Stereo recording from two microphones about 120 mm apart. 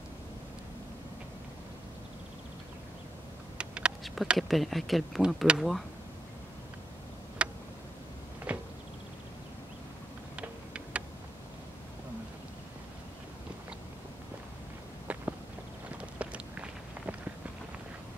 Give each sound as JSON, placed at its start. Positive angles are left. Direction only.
{"t": 3.5, "sound": "speech", "side_deg": -10}
{"t": 7.4, "sound": "tick", "side_deg": -10}
{"t": 8.5, "sound": "a sound", "side_deg": -10}
{"t": 10.3, "sound": "tick-tock", "side_deg": -10}
{"t": 15.1, "sound": "walk", "side_deg": -10}